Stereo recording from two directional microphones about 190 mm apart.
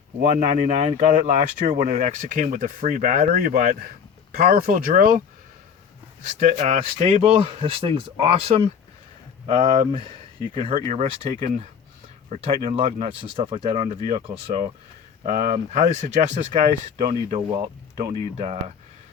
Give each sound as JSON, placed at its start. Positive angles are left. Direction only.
{"t": 0.2, "sound": "speech", "side_deg": -35}
{"t": 6.2, "sound": "speech", "side_deg": -35}
{"t": 15.2, "sound": "speech", "side_deg": -45}